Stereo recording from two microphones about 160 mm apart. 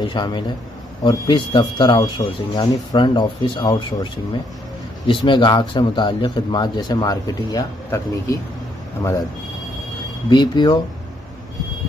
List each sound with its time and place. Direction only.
0.0 s a man's voice: 30° left (ahead or behind)
10.3 s speech: 25° left (ahead or behind)